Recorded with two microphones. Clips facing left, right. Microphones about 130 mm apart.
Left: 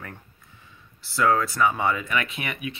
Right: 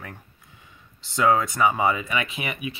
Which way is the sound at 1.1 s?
20° right (ahead or behind).